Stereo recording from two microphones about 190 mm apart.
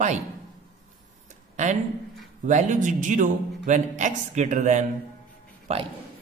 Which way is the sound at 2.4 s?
40° right (ahead or behind).